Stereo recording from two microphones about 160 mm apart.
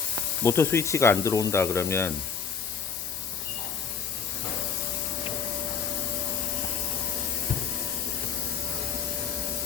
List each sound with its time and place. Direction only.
0.4 s speech: 15° left (ahead or behind)